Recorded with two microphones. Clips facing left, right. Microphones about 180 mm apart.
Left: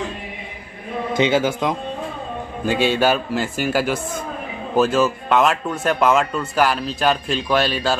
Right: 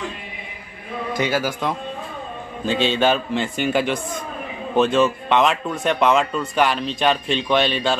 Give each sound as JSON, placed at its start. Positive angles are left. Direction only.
{"t": 1.1, "sound": "a man's voice", "side_deg": 25}